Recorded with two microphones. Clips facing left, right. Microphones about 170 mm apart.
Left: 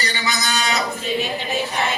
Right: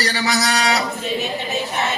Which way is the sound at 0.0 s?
75° right (ahead or behind).